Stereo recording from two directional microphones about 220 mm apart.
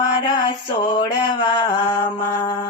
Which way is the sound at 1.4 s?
20° left (ahead or behind).